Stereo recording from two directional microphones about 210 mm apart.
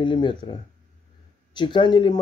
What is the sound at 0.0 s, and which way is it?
Speech, 25° left (ahead or behind).